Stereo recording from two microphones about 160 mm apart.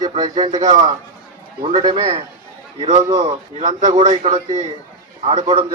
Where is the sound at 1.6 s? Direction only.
30° right (ahead or behind).